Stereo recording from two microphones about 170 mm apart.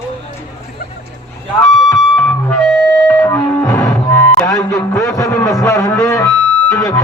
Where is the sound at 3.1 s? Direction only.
15° left (ahead or behind).